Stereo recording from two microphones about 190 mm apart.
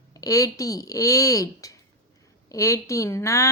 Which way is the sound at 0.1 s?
20° left (ahead or behind).